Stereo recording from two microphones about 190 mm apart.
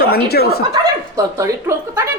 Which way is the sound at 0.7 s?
15° right (ahead or behind).